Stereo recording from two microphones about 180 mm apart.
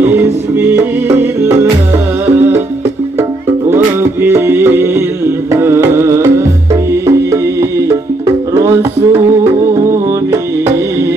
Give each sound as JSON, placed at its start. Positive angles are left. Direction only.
{"t": 0.0, "sound": "music", "side_deg": -10}
{"t": 3.7, "sound": "music", "side_deg": -10}
{"t": 8.5, "sound": "music", "side_deg": -15}